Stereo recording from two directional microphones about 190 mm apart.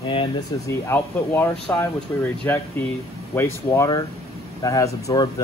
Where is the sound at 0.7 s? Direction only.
10° left (ahead or behind).